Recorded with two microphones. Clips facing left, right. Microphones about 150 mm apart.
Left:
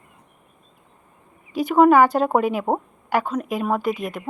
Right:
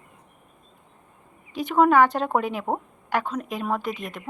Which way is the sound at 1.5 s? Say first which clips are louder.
Left 4 dB; 5° left (ahead or behind).